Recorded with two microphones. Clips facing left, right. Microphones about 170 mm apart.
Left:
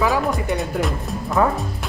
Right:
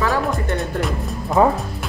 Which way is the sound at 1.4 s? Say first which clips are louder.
Right 3 dB; 20° right (ahead or behind).